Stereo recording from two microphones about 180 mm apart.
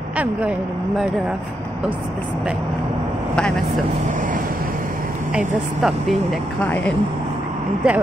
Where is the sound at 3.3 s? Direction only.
5° left (ahead or behind).